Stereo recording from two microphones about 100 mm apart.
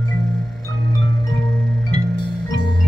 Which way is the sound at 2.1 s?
50° left (ahead or behind).